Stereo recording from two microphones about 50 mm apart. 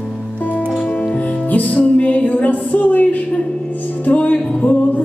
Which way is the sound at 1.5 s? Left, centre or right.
Left.